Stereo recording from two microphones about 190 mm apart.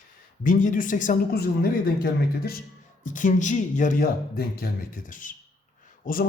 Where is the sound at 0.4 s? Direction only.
45° left (ahead or behind).